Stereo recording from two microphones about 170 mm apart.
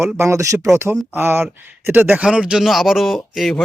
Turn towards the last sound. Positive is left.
turn(degrees=0)  # may be behind; listen again after turning